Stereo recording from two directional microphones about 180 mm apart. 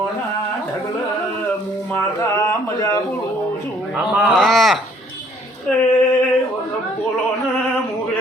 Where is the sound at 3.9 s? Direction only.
Centre (ahead or behind).